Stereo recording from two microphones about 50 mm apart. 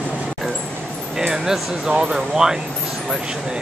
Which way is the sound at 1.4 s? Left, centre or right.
Centre.